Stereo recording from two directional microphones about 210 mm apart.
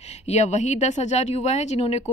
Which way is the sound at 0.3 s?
30° left (ahead or behind).